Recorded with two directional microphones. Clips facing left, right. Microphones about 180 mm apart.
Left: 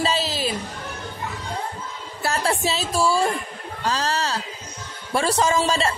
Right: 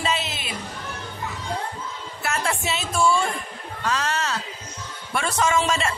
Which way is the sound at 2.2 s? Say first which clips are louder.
Left 3 dB; 35° left (ahead or behind).